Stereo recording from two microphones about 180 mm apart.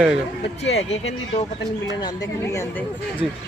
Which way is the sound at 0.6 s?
35° left (ahead or behind).